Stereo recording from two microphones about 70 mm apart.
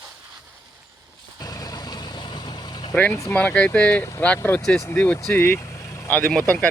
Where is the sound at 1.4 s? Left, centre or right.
Left.